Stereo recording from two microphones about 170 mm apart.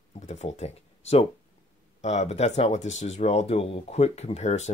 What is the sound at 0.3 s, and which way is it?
Speech, 40° left (ahead or behind).